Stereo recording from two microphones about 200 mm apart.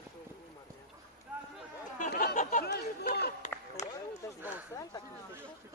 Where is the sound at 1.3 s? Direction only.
5° right (ahead or behind).